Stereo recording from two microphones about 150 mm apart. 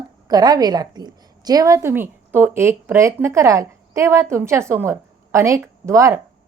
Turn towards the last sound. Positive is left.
turn(degrees=-20)  # may be behind; listen again after turning